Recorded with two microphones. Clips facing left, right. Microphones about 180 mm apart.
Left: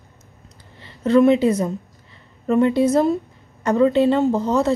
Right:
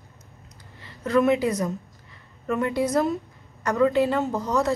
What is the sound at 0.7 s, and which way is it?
A woman's voice, 25° left (ahead or behind).